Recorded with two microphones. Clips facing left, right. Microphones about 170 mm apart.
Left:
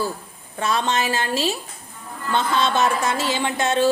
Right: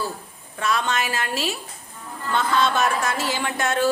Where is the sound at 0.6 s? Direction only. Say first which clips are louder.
Left 2 dB; 25° left (ahead or behind).